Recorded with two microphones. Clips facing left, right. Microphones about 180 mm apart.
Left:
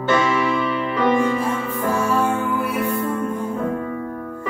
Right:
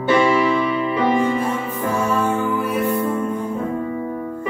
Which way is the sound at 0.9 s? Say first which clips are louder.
Left 1 dB; 20° right (ahead or behind).